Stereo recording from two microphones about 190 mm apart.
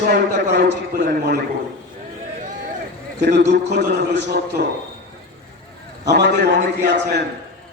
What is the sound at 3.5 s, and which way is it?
A man's voice, 65° right (ahead or behind).